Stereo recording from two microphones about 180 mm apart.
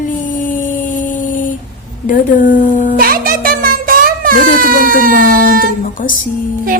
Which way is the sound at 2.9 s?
50° right (ahead or behind).